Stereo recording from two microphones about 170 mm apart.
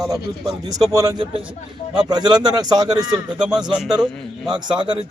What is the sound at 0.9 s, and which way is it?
Speech, 25° right (ahead or behind).